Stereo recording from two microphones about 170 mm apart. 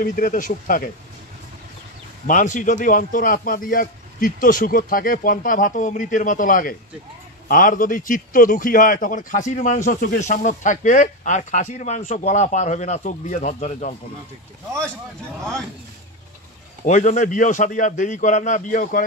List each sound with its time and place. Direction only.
0.0 s a man's voice: 55° left (ahead or behind)
2.2 s a man's voice: 50° left (ahead or behind)
16.8 s a man's voice: 45° left (ahead or behind)